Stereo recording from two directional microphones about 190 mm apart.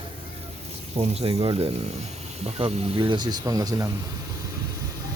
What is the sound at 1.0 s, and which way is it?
Speech, 30° right (ahead or behind).